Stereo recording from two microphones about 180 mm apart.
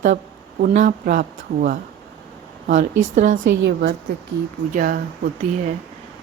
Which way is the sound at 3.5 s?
75° right (ahead or behind).